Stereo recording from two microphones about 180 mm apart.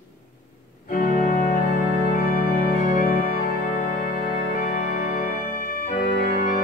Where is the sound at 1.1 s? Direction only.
45° left (ahead or behind).